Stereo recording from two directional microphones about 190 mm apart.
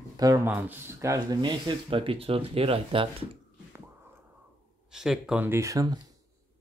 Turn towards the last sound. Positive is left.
turn(degrees=-15)  # may be behind; listen again after turning